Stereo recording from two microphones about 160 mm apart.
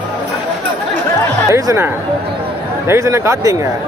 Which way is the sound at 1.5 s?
20° right (ahead or behind).